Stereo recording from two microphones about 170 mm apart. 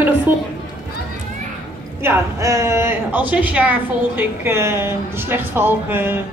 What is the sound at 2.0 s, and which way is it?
A woman's voice, 15° right (ahead or behind).